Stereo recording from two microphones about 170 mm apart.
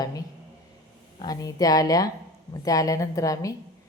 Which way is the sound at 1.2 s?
20° left (ahead or behind).